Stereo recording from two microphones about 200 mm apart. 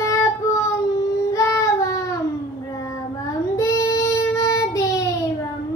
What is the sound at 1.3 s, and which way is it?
Child singing, 15° left (ahead or behind).